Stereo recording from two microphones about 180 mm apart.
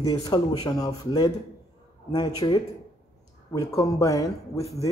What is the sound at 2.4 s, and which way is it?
Speech, 20° left (ahead or behind).